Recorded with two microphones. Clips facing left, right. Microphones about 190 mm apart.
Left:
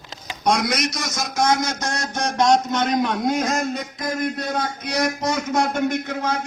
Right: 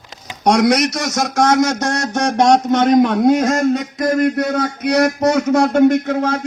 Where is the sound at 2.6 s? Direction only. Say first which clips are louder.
Right 9 dB; 50° right (ahead or behind); by 3.6 s 70° right (ahead or behind).